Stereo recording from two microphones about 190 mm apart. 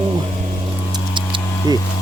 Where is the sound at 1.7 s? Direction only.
20° right (ahead or behind).